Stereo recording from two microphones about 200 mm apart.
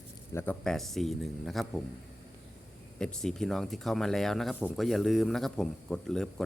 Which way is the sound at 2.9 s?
5° left (ahead or behind).